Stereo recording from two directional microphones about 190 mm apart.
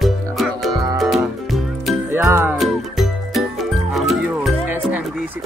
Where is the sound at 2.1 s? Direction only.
15° right (ahead or behind).